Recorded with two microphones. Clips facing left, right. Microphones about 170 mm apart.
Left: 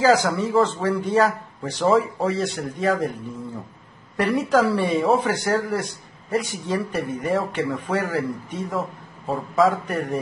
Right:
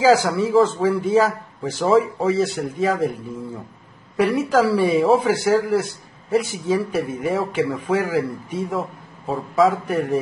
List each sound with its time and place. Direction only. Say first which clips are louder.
0.0 s a man's voice: right 2 dB; 5° right (ahead or behind)
4.2 s a man's voice: right 2 dB; centre (ahead or behind)